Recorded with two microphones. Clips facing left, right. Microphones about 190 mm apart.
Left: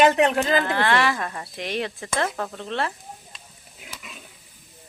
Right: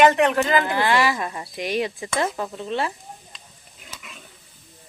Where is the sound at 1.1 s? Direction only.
15° right (ahead or behind).